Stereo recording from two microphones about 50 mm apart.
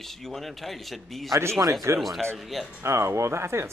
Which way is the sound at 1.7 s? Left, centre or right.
Right.